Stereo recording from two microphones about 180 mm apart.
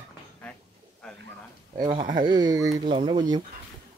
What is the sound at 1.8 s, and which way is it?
Speech, 30° right (ahead or behind).